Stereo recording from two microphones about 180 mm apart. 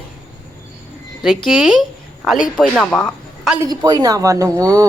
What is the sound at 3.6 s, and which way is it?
Speech, 20° right (ahead or behind).